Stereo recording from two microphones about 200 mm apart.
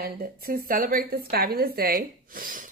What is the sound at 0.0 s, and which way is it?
A woman's voice, 45° right (ahead or behind).